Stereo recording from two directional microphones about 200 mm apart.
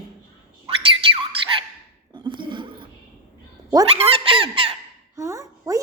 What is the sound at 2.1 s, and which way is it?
Chuckle, 25° right (ahead or behind).